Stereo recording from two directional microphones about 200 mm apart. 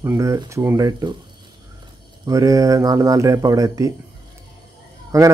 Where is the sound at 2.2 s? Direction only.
15° right (ahead or behind).